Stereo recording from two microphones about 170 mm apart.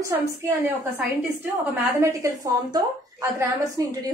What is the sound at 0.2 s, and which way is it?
A woman's voice, 15° right (ahead or behind).